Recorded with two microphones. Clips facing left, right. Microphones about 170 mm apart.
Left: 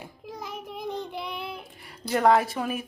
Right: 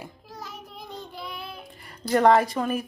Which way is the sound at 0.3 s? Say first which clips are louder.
Left 7 dB; 15° left (ahead or behind).